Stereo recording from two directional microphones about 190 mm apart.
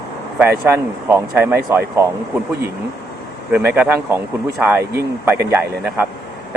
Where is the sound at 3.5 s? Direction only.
10° right (ahead or behind).